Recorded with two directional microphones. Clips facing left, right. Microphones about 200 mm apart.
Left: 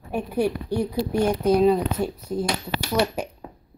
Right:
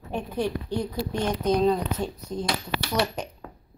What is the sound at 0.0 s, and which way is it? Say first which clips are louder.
Speech: left 4 dB; 10° left (ahead or behind).